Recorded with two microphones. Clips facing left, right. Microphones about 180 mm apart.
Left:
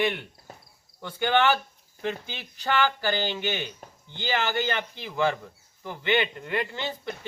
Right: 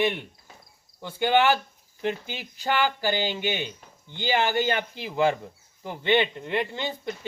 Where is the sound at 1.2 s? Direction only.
10° right (ahead or behind).